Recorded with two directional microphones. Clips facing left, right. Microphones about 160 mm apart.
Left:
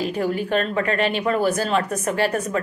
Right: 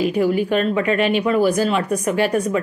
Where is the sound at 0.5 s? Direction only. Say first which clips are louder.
Right 3 dB; 40° left (ahead or behind).